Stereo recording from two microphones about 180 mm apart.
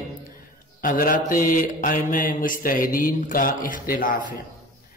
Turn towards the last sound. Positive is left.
turn(degrees=50)  # may be behind; listen again after turning